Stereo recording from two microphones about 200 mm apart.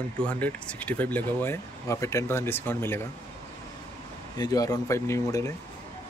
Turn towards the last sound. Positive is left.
turn(degrees=15)  # may be behind; listen again after turning